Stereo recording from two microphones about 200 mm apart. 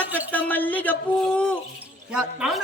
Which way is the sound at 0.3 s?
10° left (ahead or behind).